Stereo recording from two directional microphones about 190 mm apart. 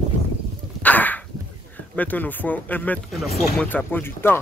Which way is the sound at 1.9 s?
10° left (ahead or behind).